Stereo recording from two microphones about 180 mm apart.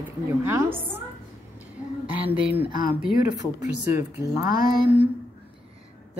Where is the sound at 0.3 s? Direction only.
15° right (ahead or behind).